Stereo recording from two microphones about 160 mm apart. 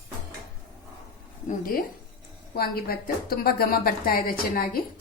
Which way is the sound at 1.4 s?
60° left (ahead or behind).